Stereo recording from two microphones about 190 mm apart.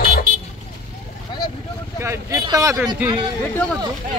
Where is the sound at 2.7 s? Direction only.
5° right (ahead or behind).